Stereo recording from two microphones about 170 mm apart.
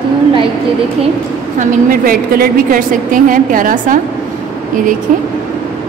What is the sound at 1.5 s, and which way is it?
A woman's voice, 55° right (ahead or behind).